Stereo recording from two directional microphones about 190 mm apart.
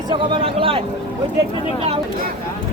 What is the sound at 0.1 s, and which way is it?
Speech, 25° right (ahead or behind).